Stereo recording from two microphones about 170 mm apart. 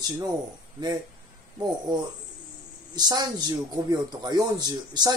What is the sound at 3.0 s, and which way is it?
Speech, 25° right (ahead or behind).